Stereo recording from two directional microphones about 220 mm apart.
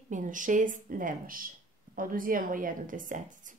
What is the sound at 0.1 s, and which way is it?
A woman's voice, 35° right (ahead or behind).